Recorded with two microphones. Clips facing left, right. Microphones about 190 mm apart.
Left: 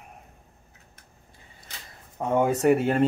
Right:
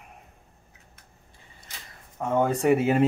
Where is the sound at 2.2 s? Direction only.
15° left (ahead or behind); by 3.0 s 5° right (ahead or behind).